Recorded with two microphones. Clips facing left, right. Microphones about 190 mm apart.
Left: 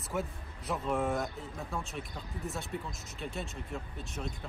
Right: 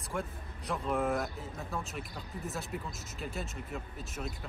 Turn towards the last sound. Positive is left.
turn(degrees=0)  # may be behind; listen again after turning